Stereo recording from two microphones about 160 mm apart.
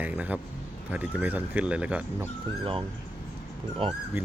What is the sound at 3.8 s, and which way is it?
Speech, 35° right (ahead or behind).